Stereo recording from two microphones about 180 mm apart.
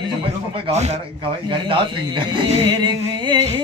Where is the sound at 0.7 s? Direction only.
35° right (ahead or behind).